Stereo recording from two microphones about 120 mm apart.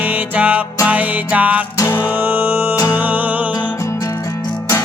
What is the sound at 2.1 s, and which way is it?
Music, 15° right (ahead or behind).